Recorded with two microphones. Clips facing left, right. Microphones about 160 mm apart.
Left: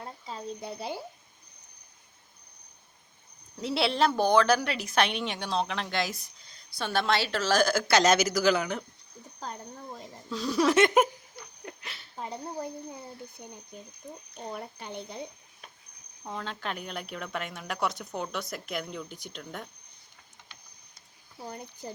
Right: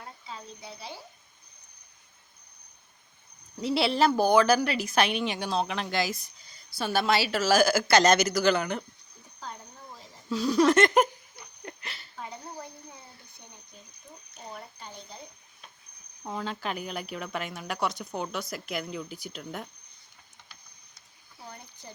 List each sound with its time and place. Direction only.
0.0 s a sound: 35° left (ahead or behind)
0.6 s speech: 50° left (ahead or behind)
3.6 s a woman's voice: centre (ahead or behind)
9.4 s a sound: 40° left (ahead or behind)
10.2 s a woman's voice: centre (ahead or behind)
11.6 s a sound: centre (ahead or behind)
14.0 s speech: 40° left (ahead or behind)
14.5 s speech: 60° left (ahead or behind)
16.2 s a woman's voice: 5° right (ahead or behind)
21.5 s speech: 40° left (ahead or behind)